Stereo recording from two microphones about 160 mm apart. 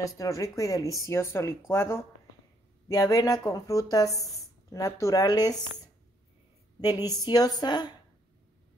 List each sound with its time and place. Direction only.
0.0 s speech: 20° left (ahead or behind)
6.8 s speech: 25° left (ahead or behind)